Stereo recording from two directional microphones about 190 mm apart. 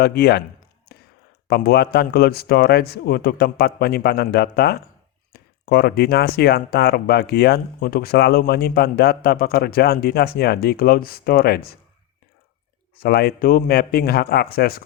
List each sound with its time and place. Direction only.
0.0 s speech: 55° left (ahead or behind)
0.9 s a sound: 55° left (ahead or behind)
1.5 s speech: 55° left (ahead or behind)
13.0 s speech: 55° left (ahead or behind)